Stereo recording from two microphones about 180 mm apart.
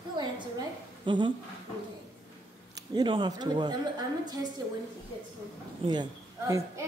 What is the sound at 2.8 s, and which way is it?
A woman's voice, 25° right (ahead or behind).